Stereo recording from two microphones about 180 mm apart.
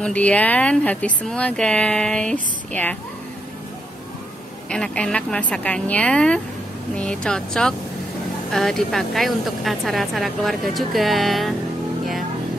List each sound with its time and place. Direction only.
0.0 s speech: 5° left (ahead or behind)
4.6 s speech: 5° left (ahead or behind)